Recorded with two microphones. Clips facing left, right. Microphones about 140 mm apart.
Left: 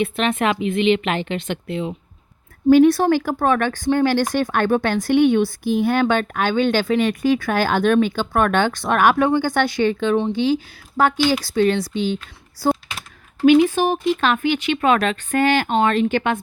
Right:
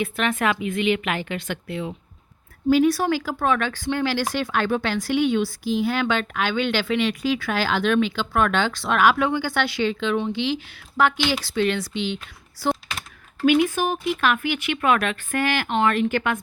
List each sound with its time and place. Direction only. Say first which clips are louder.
0.0 s speech: left 3 dB; 25° left (ahead or behind)
2.6 s speech: left 6 dB; 55° left (ahead or behind)
10.2 s speech: left 5 dB; 35° left (ahead or behind)
13.4 s speech: left 5 dB; 25° left (ahead or behind)